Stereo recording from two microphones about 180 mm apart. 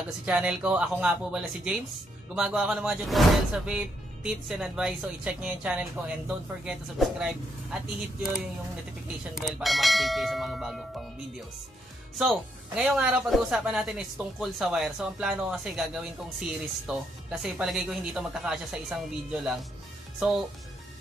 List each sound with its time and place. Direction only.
0.2 s speech: 5° right (ahead or behind)
12.2 s speech: centre (ahead or behind)